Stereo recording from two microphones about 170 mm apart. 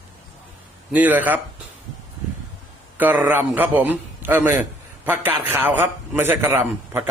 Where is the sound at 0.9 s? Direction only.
10° right (ahead or behind).